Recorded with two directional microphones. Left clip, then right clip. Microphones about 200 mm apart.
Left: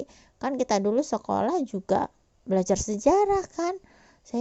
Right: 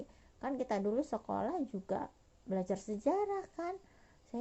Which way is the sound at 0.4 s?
40° left (ahead or behind).